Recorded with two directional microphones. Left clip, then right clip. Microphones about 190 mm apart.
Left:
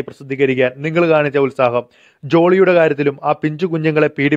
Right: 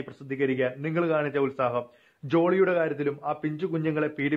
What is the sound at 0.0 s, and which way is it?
A man's voice, 40° left (ahead or behind).